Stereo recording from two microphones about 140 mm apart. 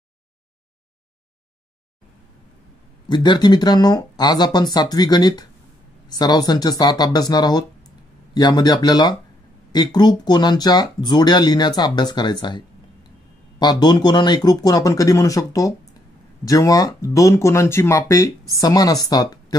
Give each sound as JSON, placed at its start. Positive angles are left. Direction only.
{"t": 3.1, "sound": "speech", "side_deg": 30}